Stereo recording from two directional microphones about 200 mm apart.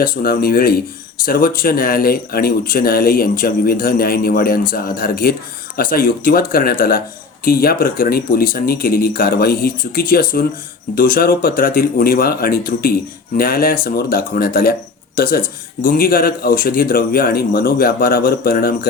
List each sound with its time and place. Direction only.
0.0 s speech: 45° left (ahead or behind)